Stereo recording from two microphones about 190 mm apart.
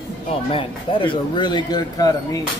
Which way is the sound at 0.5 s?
30° left (ahead or behind).